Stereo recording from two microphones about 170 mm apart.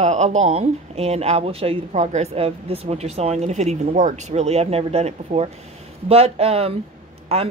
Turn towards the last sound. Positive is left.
turn(degrees=-35)  # may be behind; listen again after turning